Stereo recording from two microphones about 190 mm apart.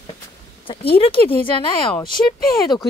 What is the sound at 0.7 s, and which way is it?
Speech, 30° left (ahead or behind).